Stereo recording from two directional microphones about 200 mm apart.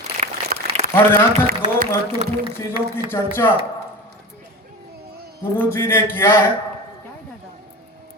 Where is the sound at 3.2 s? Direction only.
10° left (ahead or behind).